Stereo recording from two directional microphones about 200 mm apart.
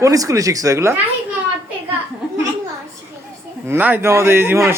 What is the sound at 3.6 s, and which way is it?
Speech, 10° right (ahead or behind).